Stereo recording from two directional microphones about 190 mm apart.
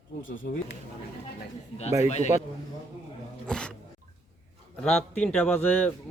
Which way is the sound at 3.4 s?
5° left (ahead or behind).